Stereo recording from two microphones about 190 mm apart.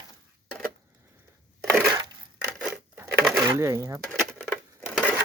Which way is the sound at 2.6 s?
5° right (ahead or behind).